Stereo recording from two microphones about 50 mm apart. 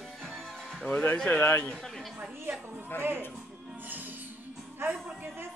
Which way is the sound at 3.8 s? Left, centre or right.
Right.